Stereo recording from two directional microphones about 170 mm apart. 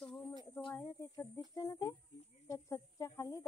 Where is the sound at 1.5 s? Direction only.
20° left (ahead or behind).